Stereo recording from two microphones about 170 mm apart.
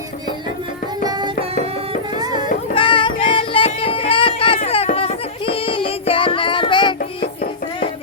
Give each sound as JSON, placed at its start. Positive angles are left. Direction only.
{"t": 1.0, "sound": "music", "side_deg": -25}
{"t": 2.7, "sound": "music", "side_deg": 30}